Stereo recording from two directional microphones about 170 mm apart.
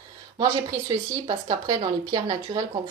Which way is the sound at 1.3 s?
25° right (ahead or behind).